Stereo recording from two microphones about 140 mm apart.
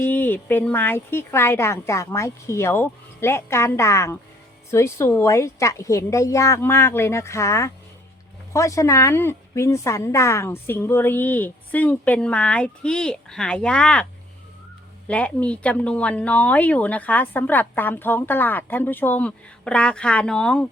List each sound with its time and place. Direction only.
0.0 s a woman's voice: 10° left (ahead or behind)